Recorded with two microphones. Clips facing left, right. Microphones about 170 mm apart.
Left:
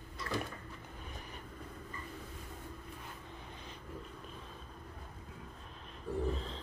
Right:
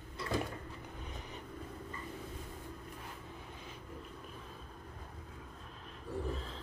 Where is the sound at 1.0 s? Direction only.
20° right (ahead or behind).